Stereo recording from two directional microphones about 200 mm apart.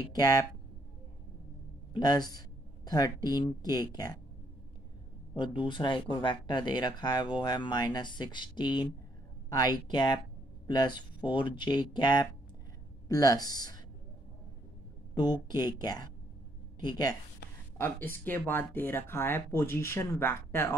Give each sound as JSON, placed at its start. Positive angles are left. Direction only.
{"t": 0.1, "sound": "speech", "side_deg": 20}
{"t": 2.0, "sound": "speech", "side_deg": 20}
{"t": 5.7, "sound": "speech", "side_deg": 25}
{"t": 15.5, "sound": "speech", "side_deg": 20}